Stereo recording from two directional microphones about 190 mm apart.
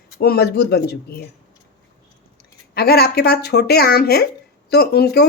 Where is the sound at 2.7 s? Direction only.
55° left (ahead or behind).